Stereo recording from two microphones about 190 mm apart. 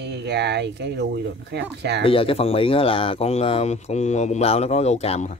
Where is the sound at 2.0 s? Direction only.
30° left (ahead or behind).